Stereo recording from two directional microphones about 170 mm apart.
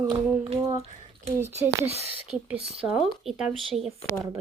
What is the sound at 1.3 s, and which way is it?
Speech, 15° right (ahead or behind).